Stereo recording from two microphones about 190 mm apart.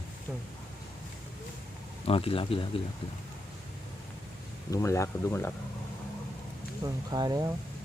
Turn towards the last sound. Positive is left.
turn(degrees=-20)  # may be behind; listen again after turning